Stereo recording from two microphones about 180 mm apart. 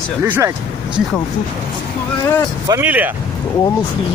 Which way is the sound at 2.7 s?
10° right (ahead or behind).